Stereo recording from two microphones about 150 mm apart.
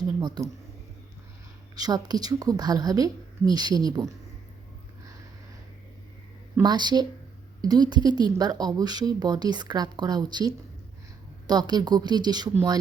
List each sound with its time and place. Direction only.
0.0 s a sound: 30° right (ahead or behind)
1.7 s speech: 25° right (ahead or behind)
6.6 s speech: 30° right (ahead or behind)